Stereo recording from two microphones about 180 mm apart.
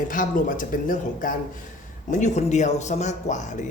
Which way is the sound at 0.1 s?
50° left (ahead or behind).